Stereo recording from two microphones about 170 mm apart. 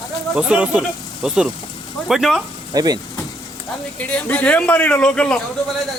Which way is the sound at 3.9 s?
10° left (ahead or behind).